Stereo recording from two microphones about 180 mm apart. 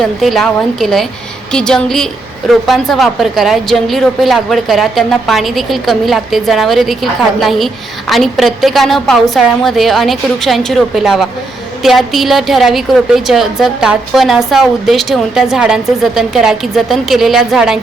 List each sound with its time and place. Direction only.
0.0 s a woman's voice: centre (ahead or behind)